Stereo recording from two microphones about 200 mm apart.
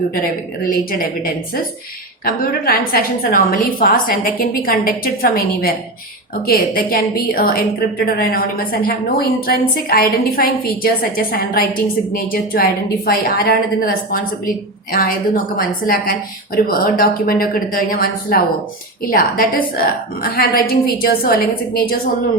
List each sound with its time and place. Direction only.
0.7 s a woman's voice: 45° left (ahead or behind)